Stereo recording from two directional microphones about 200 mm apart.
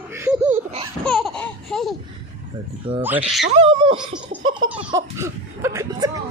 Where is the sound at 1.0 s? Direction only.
Centre (ahead or behind).